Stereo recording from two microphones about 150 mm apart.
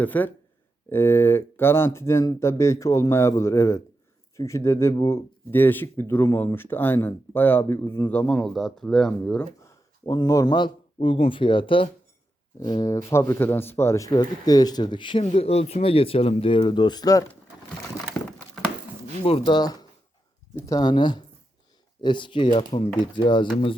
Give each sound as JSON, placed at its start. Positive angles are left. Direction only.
{"t": 0.0, "sound": "speech", "side_deg": 10}
{"t": 9.6, "sound": "speech", "side_deg": 25}
{"t": 19.2, "sound": "speech", "side_deg": 35}